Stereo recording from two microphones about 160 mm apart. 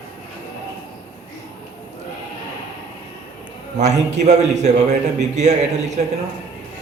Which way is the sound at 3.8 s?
45° right (ahead or behind).